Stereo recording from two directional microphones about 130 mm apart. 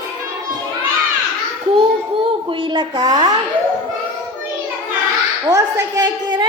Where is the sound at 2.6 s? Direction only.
35° right (ahead or behind).